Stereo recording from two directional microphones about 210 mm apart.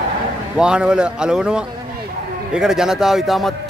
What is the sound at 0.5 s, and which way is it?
Speech, 5° right (ahead or behind).